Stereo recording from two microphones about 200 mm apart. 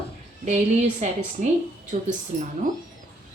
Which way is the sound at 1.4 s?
40° right (ahead or behind).